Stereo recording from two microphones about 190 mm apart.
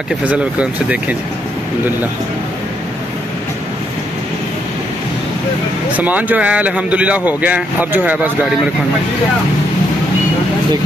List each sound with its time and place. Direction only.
0.2 s speech: 5° right (ahead or behind)
5.9 s speech: 10° right (ahead or behind)